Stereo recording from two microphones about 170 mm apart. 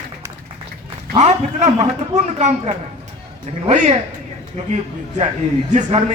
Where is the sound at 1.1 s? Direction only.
45° right (ahead or behind).